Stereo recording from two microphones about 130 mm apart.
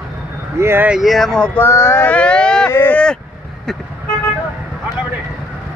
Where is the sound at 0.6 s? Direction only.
20° right (ahead or behind).